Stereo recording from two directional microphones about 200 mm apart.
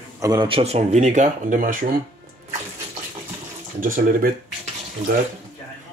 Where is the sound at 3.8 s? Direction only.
45° right (ahead or behind).